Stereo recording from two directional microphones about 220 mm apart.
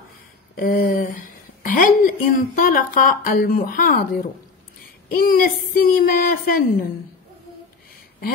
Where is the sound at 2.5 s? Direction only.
40° left (ahead or behind).